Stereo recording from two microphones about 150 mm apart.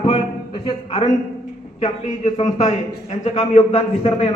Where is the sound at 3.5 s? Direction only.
45° left (ahead or behind).